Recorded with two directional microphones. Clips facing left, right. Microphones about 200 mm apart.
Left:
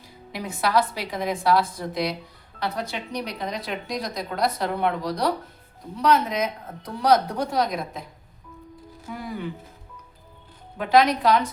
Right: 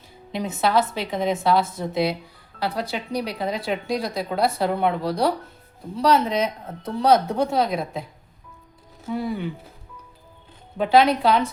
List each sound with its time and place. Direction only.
0.3 s a woman's voice: 25° right (ahead or behind)
9.0 s a woman's voice: 25° right (ahead or behind)
10.8 s a woman's voice: 30° right (ahead or behind)